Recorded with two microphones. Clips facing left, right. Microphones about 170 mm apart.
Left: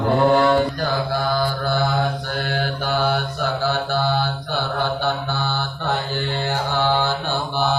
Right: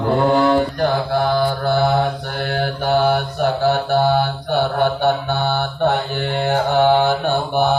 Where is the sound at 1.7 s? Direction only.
65° right (ahead or behind).